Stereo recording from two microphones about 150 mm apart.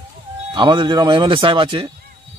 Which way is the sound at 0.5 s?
30° right (ahead or behind).